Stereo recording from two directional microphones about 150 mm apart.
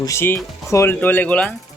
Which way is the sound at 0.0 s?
20° left (ahead or behind).